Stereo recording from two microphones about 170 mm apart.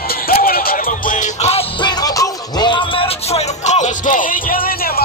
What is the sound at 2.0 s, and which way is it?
Music, 20° left (ahead or behind).